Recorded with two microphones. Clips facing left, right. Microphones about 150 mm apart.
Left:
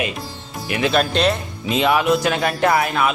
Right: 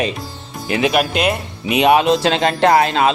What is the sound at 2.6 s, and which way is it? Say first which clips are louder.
Speech: right 5 dB; 80° right.